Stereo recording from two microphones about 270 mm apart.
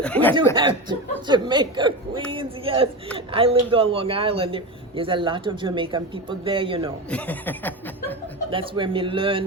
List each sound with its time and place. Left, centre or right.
0.0 s speech: centre
0.5 s a man's voice: centre
7.1 s speech: centre
8.4 s a man's voice: centre